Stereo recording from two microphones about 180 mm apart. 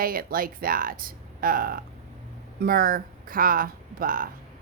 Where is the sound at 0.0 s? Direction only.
55° right (ahead or behind).